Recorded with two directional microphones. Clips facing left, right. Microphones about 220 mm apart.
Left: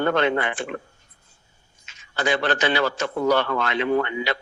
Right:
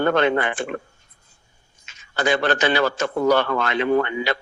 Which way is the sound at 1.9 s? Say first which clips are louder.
Right 2 dB; 45° right (ahead or behind).